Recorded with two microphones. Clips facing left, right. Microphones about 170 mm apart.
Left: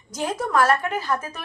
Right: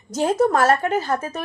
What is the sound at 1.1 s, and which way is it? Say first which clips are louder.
Speech: right 3 dB; 45° right (ahead or behind).